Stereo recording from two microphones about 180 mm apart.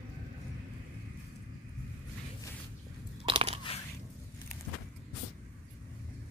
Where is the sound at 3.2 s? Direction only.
30° right (ahead or behind).